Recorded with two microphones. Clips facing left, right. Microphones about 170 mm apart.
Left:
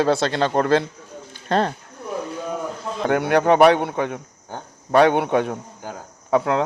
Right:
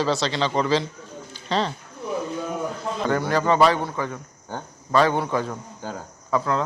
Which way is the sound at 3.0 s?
65° left (ahead or behind).